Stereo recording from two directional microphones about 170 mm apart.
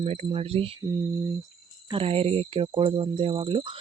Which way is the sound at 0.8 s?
20° right (ahead or behind).